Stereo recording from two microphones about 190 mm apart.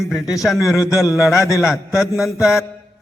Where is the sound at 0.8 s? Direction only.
15° left (ahead or behind).